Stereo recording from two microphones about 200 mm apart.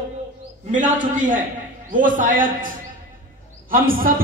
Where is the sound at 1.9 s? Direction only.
40° right (ahead or behind).